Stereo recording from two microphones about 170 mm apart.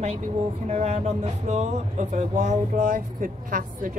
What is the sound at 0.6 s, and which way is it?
A woman's voice, 40° right (ahead or behind).